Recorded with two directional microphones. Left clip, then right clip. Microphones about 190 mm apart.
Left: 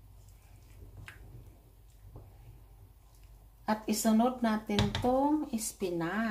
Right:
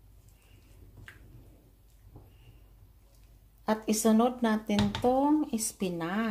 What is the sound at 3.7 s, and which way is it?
Speech, 40° right (ahead or behind).